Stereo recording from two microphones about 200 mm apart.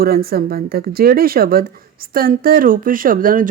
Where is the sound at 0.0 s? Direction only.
50° right (ahead or behind).